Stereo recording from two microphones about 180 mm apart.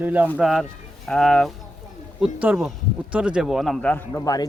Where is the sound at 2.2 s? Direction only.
10° right (ahead or behind); by 4.2 s 5° left (ahead or behind).